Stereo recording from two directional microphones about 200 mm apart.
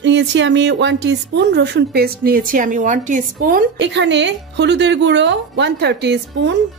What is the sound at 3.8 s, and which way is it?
A woman's voice, 60° right (ahead or behind).